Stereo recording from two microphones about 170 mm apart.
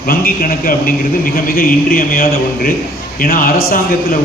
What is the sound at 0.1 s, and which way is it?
A man's voice, 55° left (ahead or behind).